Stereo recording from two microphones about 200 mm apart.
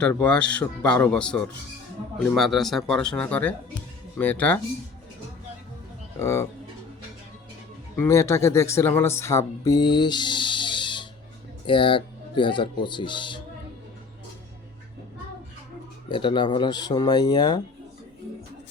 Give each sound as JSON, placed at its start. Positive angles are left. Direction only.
{"t": 0.0, "sound": "speech", "side_deg": 5}
{"t": 6.1, "sound": "speech", "side_deg": 15}
{"t": 7.9, "sound": "speech", "side_deg": 15}
{"t": 16.0, "sound": "speech", "side_deg": 25}